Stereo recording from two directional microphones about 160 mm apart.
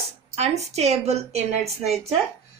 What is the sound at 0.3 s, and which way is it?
A woman's voice, 40° right (ahead or behind).